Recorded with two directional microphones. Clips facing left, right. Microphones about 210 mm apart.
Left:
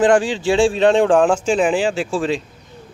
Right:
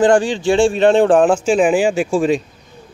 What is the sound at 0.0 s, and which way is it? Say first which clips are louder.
Speech: right 2 dB; 5° left (ahead or behind).